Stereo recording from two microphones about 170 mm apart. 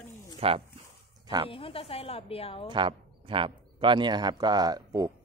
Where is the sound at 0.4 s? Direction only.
35° right (ahead or behind).